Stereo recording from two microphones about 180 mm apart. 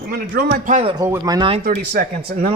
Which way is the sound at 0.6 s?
40° right (ahead or behind).